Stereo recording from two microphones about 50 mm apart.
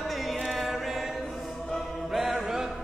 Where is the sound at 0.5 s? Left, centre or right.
Centre.